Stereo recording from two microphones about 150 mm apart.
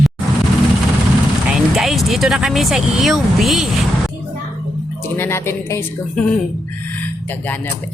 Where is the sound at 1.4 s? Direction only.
Centre (ahead or behind).